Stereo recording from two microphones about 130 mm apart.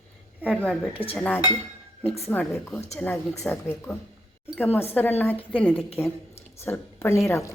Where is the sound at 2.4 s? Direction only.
5° left (ahead or behind).